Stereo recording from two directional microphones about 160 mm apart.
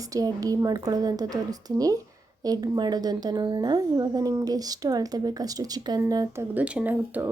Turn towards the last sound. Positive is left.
turn(degrees=-10)  # may be behind; listen again after turning